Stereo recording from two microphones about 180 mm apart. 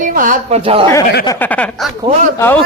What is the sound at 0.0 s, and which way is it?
Speech, 50° right (ahead or behind).